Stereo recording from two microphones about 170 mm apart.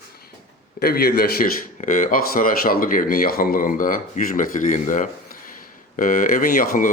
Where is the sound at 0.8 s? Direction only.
65° left (ahead or behind).